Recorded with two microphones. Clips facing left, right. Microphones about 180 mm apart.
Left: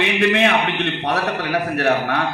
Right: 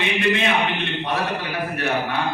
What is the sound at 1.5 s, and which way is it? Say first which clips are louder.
Speech: left 6 dB; 70° left (ahead or behind).